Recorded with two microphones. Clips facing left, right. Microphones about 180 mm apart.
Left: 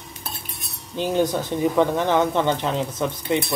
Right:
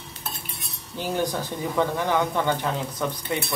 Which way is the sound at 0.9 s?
20° left (ahead or behind).